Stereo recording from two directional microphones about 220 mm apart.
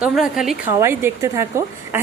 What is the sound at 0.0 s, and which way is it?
A woman's voice, 5° right (ahead or behind).